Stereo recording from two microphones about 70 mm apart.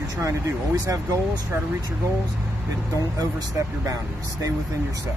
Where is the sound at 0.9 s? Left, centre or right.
Right.